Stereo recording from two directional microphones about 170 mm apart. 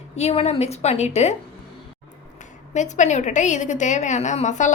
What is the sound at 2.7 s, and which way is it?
A woman's voice, 45° left (ahead or behind).